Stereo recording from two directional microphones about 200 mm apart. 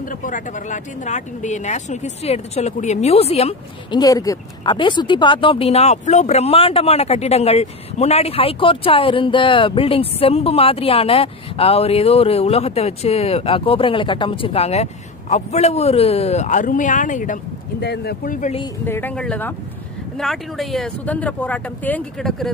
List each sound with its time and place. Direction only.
0.0 s speech: 40° left (ahead or behind)
4.0 s speech: 15° left (ahead or behind); by 17.4 s 40° left (ahead or behind)
17.7 s speech: 55° left (ahead or behind); by 18.6 s 40° left (ahead or behind)
18.9 s speech: 10° left (ahead or behind)